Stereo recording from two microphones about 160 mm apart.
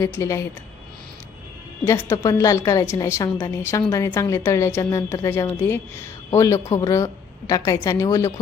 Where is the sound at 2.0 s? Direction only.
15° left (ahead or behind).